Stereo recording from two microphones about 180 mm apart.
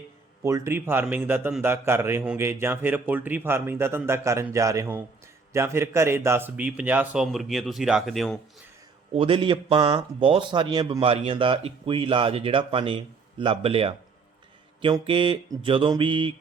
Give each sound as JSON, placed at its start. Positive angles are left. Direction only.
{"t": 0.4, "sound": "a man's voice", "side_deg": -15}
{"t": 9.1, "sound": "speech", "side_deg": -30}